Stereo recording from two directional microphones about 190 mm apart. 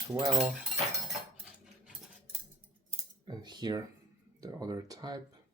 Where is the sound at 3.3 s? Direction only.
20° right (ahead or behind).